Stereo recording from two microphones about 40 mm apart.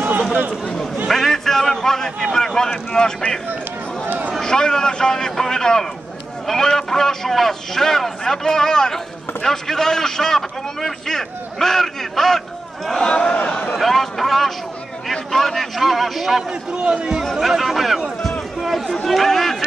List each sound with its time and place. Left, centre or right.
1.0 s a man's voice: centre
4.4 s a man's voice: centre
13.4 s speech: left
13.7 s a man's voice: centre
16.7 s a man's voice: right
17.4 s a man's voice: centre
18.6 s a sound: centre
19.0 s a man's voice: centre